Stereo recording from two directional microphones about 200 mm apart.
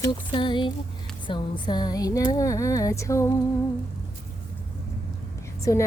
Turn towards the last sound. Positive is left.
turn(degrees=15)  # may be behind; listen again after turning